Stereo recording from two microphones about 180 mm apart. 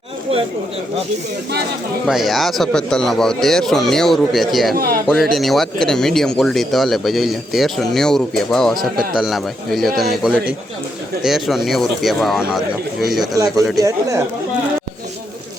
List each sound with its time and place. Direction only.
2.0 s speech: centre (ahead or behind)
4.7 s a man's voice: 55° right (ahead or behind)
5.0 s speech: centre (ahead or behind)
13.8 s speech: 15° right (ahead or behind)